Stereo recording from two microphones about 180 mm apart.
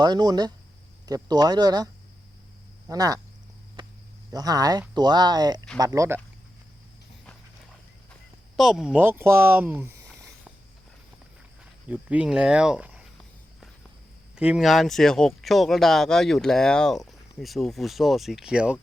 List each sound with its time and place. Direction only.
0.0 s speech: 20° right (ahead or behind)
4.3 s speech: 20° right (ahead or behind)
8.5 s speech: centre (ahead or behind)
10.2 s a sound: 15° right (ahead or behind)
11.9 s speech: 5° right (ahead or behind)
14.3 s speech: 5° right (ahead or behind)